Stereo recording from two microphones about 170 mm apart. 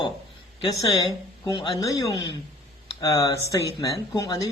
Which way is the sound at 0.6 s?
25° left (ahead or behind).